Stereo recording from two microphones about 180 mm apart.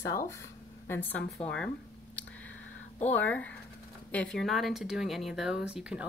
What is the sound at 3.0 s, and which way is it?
A woman's voice, 10° left (ahead or behind).